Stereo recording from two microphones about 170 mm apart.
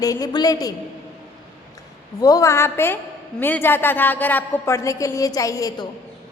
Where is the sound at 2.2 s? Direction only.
20° left (ahead or behind).